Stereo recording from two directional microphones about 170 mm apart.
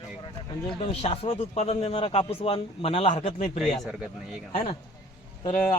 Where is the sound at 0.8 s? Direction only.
35° left (ahead or behind).